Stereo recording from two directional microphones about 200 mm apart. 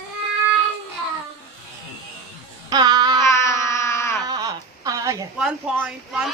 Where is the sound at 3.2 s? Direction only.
15° left (ahead or behind).